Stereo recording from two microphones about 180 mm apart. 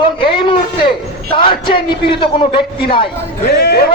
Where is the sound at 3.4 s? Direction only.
65° left (ahead or behind).